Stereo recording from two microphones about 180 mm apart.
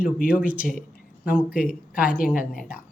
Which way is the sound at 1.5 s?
50° left (ahead or behind).